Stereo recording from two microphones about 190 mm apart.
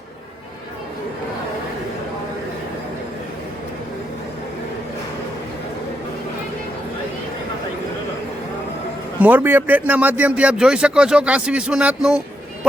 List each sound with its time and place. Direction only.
9.2 s speech: 10° right (ahead or behind)